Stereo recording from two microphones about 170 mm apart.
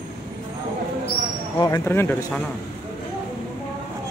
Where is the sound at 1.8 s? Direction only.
10° left (ahead or behind).